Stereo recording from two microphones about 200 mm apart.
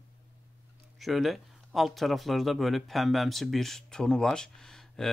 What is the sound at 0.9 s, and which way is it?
Speech, centre (ahead or behind).